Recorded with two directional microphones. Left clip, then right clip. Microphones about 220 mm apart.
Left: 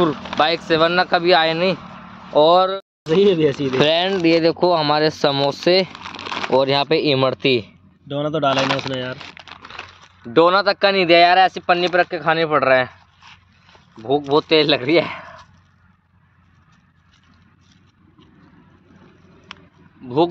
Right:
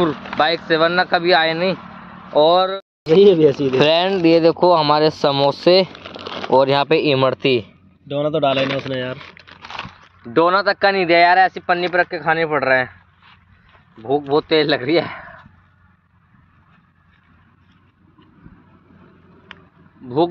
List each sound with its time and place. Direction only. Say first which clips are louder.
0.7 s speech: even; 10° left (ahead or behind)
2.8 s speech: right 4 dB; 15° right (ahead or behind)
6.0 s a sound: left 2 dB; 20° left (ahead or behind)
6.5 s speech: right 3 dB; 5° right (ahead or behind)
8.9 s speech: right 2 dB; 15° right (ahead or behind)
10.2 s speech: left 1 dB; 10° left (ahead or behind)
14.3 s speech: left 1 dB; 10° left (ahead or behind)